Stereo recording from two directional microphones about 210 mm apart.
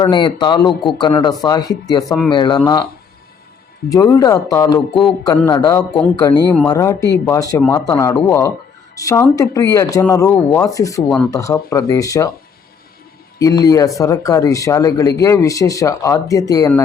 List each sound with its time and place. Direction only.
0.0 s a man's voice: 20° left (ahead or behind)
3.8 s a man's voice: 15° left (ahead or behind)
13.4 s speech: 15° left (ahead or behind)